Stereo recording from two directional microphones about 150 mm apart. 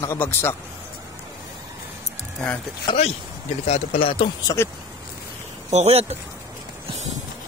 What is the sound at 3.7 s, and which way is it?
Speech, 40° left (ahead or behind).